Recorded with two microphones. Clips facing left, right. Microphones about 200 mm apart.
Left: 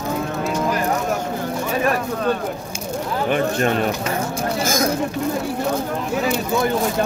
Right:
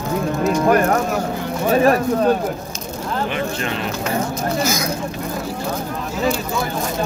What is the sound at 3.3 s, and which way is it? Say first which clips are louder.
Speech: left 4 dB; 50° left (ahead or behind).